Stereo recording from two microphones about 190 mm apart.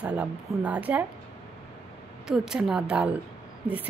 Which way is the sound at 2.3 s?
5° right (ahead or behind).